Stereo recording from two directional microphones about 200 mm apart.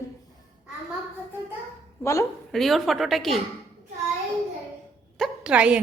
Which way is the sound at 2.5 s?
Centre (ahead or behind).